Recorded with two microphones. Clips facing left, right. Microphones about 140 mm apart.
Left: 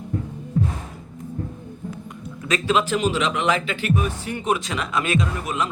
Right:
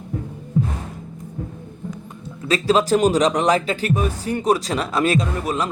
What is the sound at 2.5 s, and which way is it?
Speech, 35° right (ahead or behind).